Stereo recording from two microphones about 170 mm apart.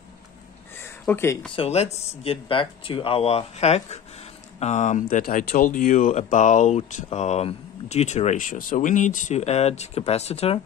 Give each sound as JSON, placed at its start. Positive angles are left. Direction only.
{"t": 1.0, "sound": "speech", "side_deg": 15}
{"t": 1.5, "sound": "speech", "side_deg": 35}